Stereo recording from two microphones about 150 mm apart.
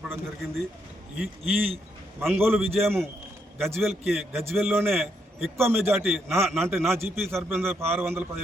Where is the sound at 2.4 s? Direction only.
15° right (ahead or behind).